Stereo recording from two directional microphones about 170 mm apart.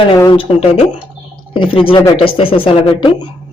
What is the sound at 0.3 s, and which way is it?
A man's voice, 35° left (ahead or behind).